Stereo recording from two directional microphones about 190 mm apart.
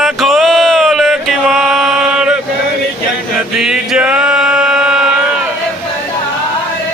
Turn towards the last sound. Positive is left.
turn(degrees=-5)  # may be behind; listen again after turning